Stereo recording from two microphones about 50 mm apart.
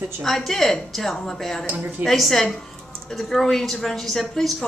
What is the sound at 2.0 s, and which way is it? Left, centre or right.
A woman's voice, centre.